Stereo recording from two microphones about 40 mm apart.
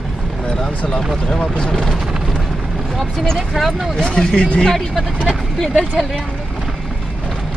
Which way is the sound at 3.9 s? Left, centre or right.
Left.